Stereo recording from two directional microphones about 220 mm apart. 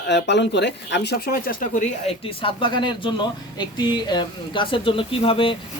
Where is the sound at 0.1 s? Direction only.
50° left (ahead or behind).